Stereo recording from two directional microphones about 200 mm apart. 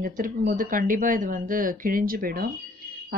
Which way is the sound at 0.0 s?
40° right (ahead or behind).